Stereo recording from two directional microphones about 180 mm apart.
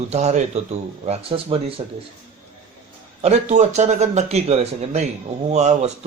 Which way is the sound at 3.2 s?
35° right (ahead or behind).